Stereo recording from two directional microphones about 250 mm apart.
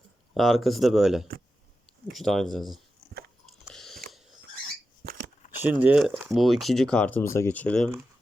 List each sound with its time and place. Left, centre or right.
0.3 s speech: centre
3.6 s chewing: centre
5.0 s a sound: right
5.8 s speech: centre